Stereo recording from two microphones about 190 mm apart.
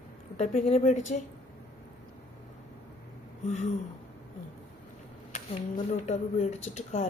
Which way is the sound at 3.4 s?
40° left (ahead or behind).